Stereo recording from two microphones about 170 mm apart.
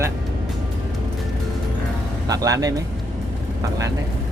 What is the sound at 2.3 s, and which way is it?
Speech, 20° right (ahead or behind).